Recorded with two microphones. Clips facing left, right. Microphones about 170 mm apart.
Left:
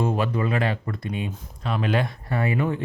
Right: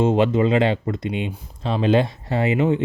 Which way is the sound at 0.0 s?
25° right (ahead or behind).